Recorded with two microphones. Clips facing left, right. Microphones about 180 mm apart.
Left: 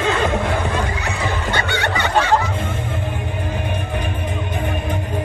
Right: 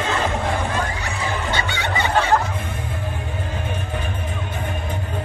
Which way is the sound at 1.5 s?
60° left (ahead or behind).